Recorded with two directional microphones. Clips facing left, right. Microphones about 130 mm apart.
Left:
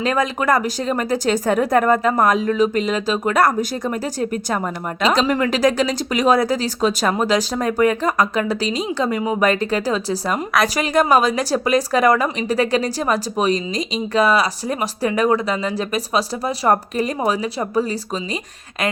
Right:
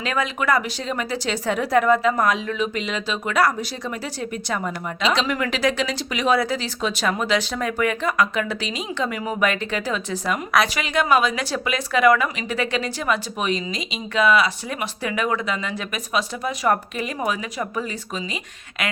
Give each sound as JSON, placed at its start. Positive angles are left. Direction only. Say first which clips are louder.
{"t": 0.0, "sound": "speech", "louder": "left 5 dB", "side_deg": 40}
{"t": 5.2, "sound": "speech", "louder": "left 5 dB", "side_deg": 35}